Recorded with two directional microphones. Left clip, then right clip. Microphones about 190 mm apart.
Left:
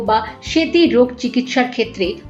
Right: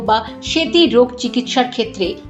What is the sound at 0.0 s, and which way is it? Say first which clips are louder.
A woman's voice: even; 20° right (ahead or behind).